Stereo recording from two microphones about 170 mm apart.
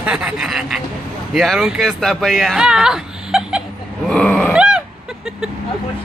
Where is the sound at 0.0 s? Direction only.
5° right (ahead or behind).